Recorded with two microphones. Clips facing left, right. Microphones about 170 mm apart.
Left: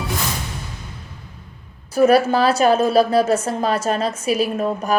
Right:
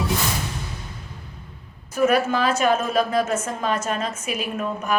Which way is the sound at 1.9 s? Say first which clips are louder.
Left 5 dB; 35° left (ahead or behind).